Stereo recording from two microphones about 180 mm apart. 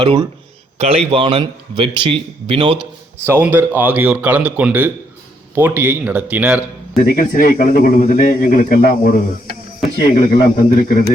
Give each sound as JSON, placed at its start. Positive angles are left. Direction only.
{"t": 0.0, "sound": "speech", "side_deg": -25}
{"t": 3.2, "sound": "a man's voice", "side_deg": -10}
{"t": 7.0, "sound": "speech", "side_deg": 50}
{"t": 10.0, "sound": "speech", "side_deg": 25}
{"t": 10.8, "sound": "speech", "side_deg": 50}